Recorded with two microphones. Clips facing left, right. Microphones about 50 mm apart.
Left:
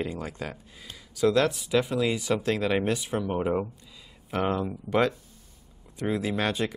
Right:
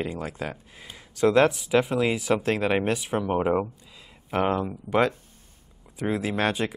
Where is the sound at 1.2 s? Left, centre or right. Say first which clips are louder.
Right 3 dB; right.